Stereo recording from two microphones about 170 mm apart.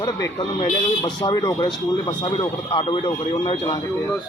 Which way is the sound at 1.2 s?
25° left (ahead or behind).